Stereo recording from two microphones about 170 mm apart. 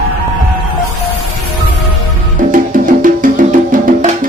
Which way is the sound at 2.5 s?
55° right (ahead or behind).